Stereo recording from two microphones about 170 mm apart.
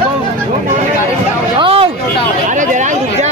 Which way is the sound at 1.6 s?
30° right (ahead or behind).